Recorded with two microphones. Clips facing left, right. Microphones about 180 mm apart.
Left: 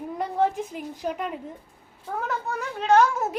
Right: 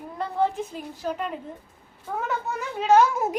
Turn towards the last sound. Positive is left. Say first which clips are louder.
# right 1 dB
turn(degrees=-5)  # may be behind; listen again after turning